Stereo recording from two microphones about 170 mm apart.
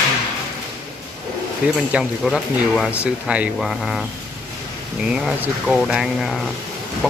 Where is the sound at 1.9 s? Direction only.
5° right (ahead or behind).